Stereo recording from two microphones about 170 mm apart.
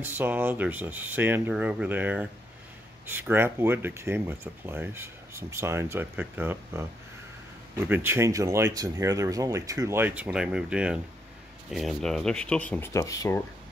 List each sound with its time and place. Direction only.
0.0 s speech: 10° right (ahead or behind); by 13.4 s 20° left (ahead or behind)